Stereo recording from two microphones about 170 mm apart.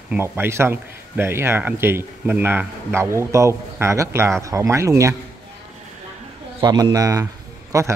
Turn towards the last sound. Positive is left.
turn(degrees=-15)  # may be behind; listen again after turning